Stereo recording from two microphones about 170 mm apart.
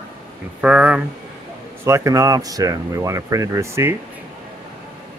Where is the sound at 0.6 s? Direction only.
5° right (ahead or behind).